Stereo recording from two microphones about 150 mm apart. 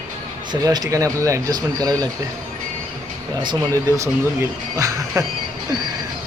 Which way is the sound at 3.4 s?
25° right (ahead or behind).